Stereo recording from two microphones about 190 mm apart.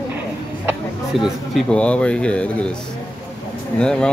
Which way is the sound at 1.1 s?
Centre (ahead or behind).